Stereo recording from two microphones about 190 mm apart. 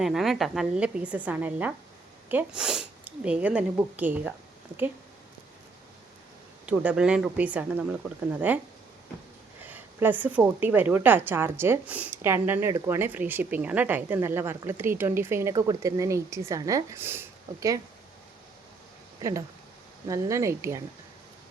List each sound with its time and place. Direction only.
0.0 s a woman's voice: centre (ahead or behind)
6.7 s a woman's voice: 5° right (ahead or behind)
9.6 s a woman's voice: 10° right (ahead or behind)
20.1 s a woman's voice: 15° right (ahead or behind)